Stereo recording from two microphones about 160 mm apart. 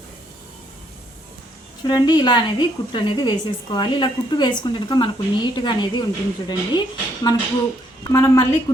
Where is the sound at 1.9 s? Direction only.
25° left (ahead or behind).